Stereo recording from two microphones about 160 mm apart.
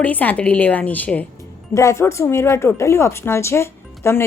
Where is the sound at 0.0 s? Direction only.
10° left (ahead or behind).